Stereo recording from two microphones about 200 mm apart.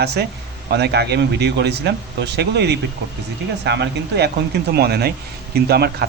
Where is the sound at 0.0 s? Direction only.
55° right (ahead or behind).